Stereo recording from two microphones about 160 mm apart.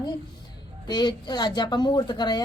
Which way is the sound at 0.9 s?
25° left (ahead or behind).